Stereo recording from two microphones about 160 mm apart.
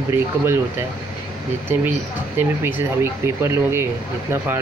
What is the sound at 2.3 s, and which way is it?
Speech, 15° right (ahead or behind).